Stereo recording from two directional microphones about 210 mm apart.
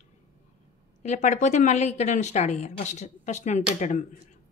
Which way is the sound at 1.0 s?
35° left (ahead or behind).